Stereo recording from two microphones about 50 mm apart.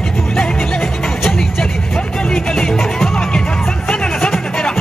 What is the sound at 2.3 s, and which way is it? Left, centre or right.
Music, centre.